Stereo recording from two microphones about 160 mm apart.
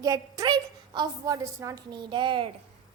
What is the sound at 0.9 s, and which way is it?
A woman's voice, 25° right (ahead or behind).